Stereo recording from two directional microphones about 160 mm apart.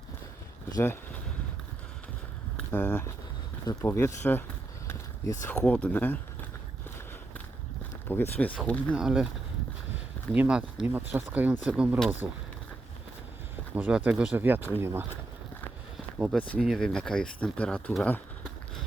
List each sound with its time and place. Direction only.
2.6 s speech: 10° left (ahead or behind)
5.6 s speech: 5° left (ahead or behind)
8.0 s speech: 10° left (ahead or behind)
9.0 s speech: 5° right (ahead or behind)
10.3 s speech: 5° right (ahead or behind)
13.7 s speech: 10° right (ahead or behind)
16.0 s a sound: centre (ahead or behind)
16.6 s speech: centre (ahead or behind)